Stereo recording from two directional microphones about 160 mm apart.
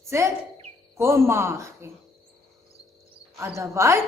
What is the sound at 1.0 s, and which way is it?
Speech, 15° right (ahead or behind).